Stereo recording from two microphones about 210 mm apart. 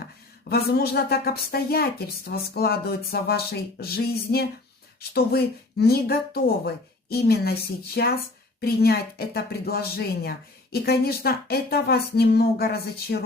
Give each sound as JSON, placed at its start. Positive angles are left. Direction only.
{"t": 0.4, "sound": "speech", "side_deg": 50}